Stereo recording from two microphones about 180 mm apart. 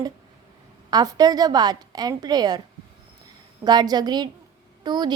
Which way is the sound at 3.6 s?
20° right (ahead or behind).